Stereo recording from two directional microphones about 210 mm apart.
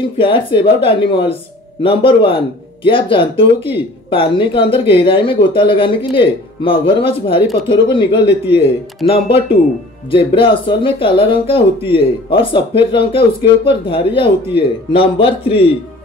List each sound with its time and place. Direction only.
0.2 s speech: 25° left (ahead or behind)